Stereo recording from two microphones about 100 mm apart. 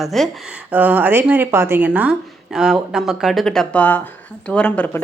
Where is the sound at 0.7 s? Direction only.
15° right (ahead or behind).